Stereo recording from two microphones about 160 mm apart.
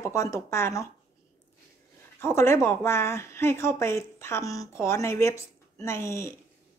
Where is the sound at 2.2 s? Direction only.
15° left (ahead or behind).